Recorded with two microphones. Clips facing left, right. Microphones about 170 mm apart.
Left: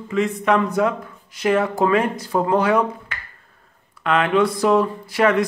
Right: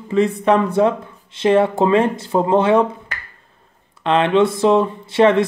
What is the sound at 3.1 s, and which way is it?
Finger snapping, 40° right (ahead or behind).